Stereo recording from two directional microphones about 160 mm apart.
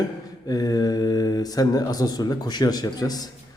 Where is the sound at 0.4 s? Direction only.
25° left (ahead or behind).